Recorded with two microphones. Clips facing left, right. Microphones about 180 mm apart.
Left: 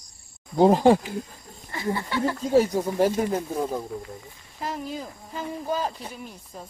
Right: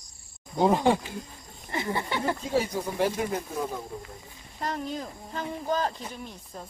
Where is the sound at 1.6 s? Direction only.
20° right (ahead or behind).